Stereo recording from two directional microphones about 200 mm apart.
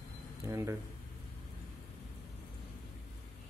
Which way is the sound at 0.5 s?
15° right (ahead or behind).